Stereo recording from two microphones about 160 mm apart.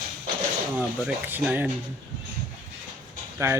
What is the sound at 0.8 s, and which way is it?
Speech, 5° right (ahead or behind).